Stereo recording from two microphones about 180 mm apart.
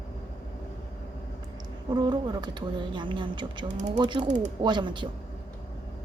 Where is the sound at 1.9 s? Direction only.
25° right (ahead or behind).